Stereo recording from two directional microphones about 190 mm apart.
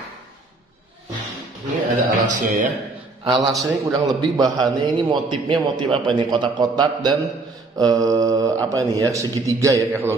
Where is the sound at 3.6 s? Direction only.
20° right (ahead or behind).